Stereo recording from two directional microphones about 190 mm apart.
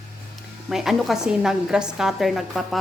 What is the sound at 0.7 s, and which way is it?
A woman's voice, centre (ahead or behind).